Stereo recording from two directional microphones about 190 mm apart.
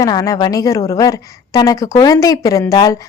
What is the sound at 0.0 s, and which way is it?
A woman's voice, 20° left (ahead or behind).